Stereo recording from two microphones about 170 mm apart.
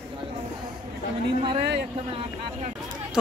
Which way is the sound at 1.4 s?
30° right (ahead or behind).